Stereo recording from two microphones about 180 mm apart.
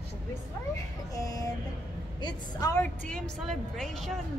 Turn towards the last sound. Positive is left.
turn(degrees=0)  # may be behind; listen again after turning